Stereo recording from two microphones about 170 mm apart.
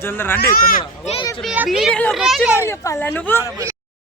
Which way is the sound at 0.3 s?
60° left (ahead or behind).